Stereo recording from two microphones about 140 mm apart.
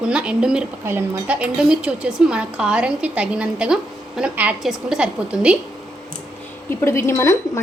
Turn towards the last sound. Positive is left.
turn(degrees=25)  # may be behind; listen again after turning